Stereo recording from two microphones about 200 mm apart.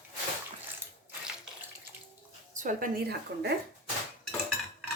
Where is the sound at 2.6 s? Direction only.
40° right (ahead or behind).